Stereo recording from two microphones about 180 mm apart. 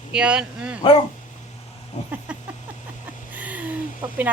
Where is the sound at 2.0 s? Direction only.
40° left (ahead or behind).